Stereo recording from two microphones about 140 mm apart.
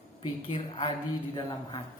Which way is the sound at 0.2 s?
40° left (ahead or behind).